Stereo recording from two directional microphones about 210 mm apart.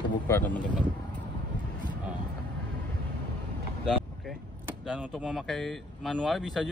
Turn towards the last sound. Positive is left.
turn(degrees=0)  # may be behind; listen again after turning